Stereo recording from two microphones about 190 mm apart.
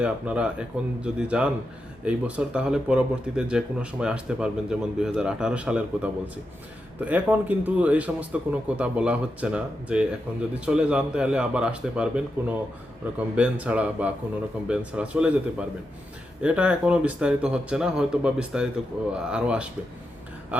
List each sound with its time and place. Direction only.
0.0 s speech: 5° right (ahead or behind)